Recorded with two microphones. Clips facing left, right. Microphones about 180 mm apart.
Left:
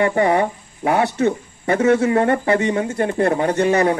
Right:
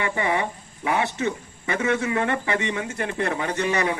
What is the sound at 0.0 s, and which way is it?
Speech, 40° left (ahead or behind).